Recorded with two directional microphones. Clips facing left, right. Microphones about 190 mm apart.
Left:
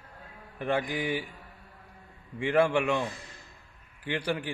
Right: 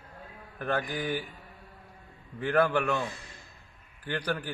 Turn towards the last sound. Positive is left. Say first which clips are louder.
# left 1 dB
turn(degrees=10)  # may be behind; listen again after turning